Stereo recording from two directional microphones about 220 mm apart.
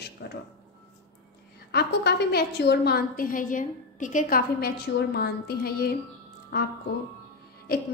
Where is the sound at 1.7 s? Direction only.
45° left (ahead or behind).